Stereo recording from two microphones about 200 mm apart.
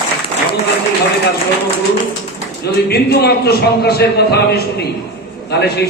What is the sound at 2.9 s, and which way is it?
A man's voice, 55° left (ahead or behind).